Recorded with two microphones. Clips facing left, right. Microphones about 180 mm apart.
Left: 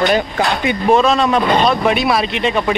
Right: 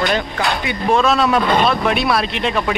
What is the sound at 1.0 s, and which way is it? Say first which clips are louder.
Speech: left 2 dB; centre (ahead or behind).